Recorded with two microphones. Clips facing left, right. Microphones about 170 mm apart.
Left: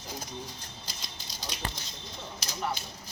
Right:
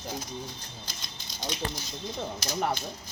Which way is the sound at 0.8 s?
35° left (ahead or behind).